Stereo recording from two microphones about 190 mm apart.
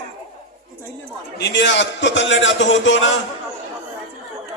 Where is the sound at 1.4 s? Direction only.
70° left (ahead or behind).